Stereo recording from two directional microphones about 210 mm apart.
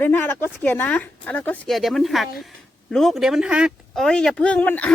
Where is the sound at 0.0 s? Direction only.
10° left (ahead or behind).